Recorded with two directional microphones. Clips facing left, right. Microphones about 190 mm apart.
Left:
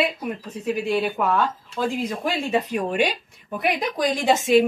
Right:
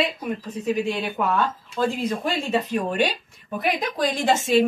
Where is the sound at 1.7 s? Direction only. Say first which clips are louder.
Right 2 dB; 10° left (ahead or behind).